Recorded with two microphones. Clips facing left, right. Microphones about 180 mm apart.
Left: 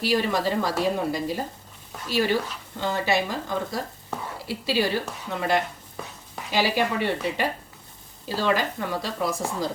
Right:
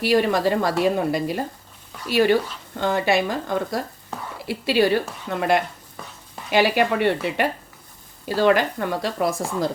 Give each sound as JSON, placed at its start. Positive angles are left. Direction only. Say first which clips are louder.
{"t": 0.0, "sound": "a woman's voice", "louder": "right 5 dB", "side_deg": -60}